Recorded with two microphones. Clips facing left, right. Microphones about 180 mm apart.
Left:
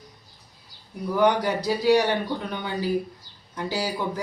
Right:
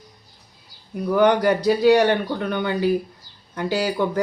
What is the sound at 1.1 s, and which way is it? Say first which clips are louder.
Speech: right 5 dB; 60° right (ahead or behind).